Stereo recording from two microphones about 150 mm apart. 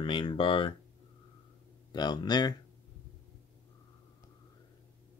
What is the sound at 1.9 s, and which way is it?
Speech, 30° left (ahead or behind).